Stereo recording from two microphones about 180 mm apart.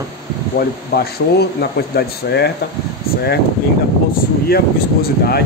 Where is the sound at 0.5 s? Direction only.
60° left (ahead or behind).